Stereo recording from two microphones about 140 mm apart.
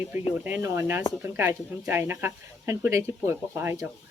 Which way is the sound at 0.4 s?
15° right (ahead or behind).